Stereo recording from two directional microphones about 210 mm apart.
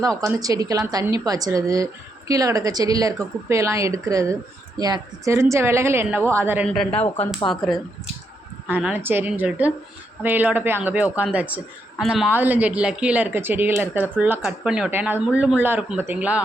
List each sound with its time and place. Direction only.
0.0 s speech: 15° right (ahead or behind)
6.7 s speech: 5° left (ahead or behind)